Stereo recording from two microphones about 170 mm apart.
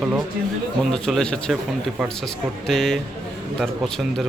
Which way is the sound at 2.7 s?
Centre (ahead or behind).